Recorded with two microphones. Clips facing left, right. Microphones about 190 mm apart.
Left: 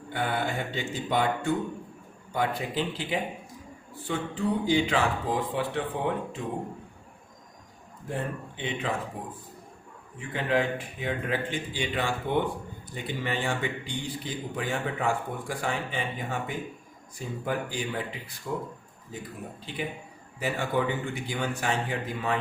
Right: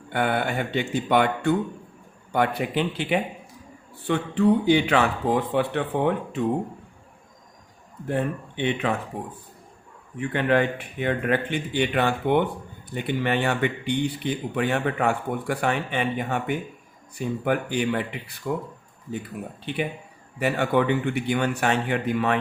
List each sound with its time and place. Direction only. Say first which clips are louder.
0.1 s speech: right 5 dB; 65° right (ahead or behind)
8.0 s speech: right 7 dB; 65° right (ahead or behind)
10.2 s a man's voice: right 5 dB; 65° right (ahead or behind)
19.7 s a man's voice: right 7 dB; 65° right (ahead or behind)